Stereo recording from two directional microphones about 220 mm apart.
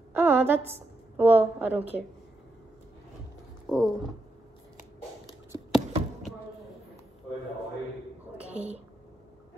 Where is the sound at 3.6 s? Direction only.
Centre (ahead or behind).